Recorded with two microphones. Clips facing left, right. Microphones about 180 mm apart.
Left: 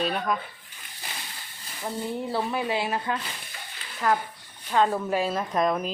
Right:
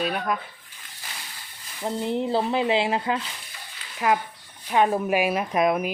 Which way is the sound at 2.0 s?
20° right (ahead or behind).